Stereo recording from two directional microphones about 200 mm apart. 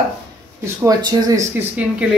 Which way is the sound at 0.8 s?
15° right (ahead or behind).